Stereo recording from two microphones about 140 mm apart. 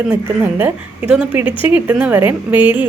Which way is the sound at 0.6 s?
10° right (ahead or behind).